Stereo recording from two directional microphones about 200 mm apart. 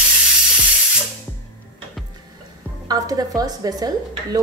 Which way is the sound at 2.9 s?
20° right (ahead or behind).